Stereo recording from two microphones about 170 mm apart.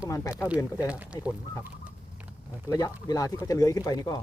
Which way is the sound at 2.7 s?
20° left (ahead or behind).